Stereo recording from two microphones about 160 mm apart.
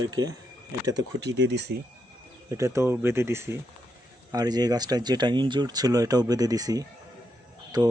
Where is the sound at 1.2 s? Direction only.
90° right.